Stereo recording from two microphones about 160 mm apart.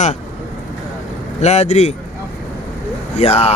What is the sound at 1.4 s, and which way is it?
Speech, 40° left (ahead or behind).